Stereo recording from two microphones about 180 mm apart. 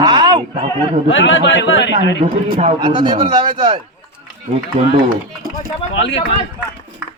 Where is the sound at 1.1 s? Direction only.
90° left.